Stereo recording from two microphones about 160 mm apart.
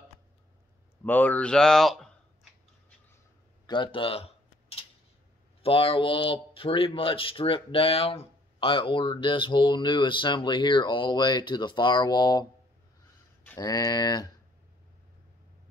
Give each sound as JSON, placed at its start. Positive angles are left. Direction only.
{"t": 1.0, "sound": "speech", "side_deg": 10}
{"t": 3.6, "sound": "a sound", "side_deg": 30}
{"t": 5.6, "sound": "a man's voice", "side_deg": 35}
{"t": 13.6, "sound": "speech", "side_deg": 25}